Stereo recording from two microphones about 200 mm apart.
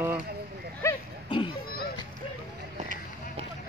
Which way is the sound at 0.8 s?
15° left (ahead or behind).